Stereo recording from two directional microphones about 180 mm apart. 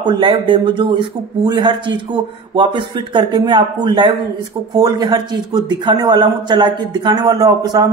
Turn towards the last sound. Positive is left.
turn(degrees=-20)  # may be behind; listen again after turning